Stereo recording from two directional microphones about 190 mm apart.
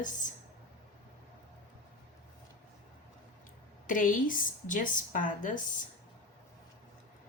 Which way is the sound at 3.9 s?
45° left (ahead or behind).